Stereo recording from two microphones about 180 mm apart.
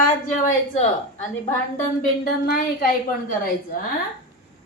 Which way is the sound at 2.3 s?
55° left (ahead or behind).